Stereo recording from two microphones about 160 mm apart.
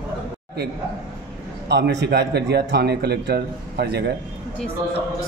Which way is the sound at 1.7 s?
90° right.